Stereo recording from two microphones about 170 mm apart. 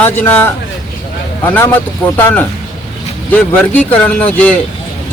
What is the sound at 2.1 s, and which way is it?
Speech, 10° left (ahead or behind).